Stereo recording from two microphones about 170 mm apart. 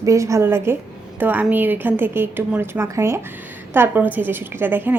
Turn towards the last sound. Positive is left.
turn(degrees=-10)  # may be behind; listen again after turning